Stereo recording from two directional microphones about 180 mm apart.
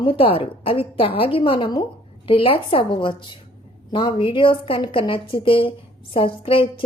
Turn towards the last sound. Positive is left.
turn(degrees=30)  # may be behind; listen again after turning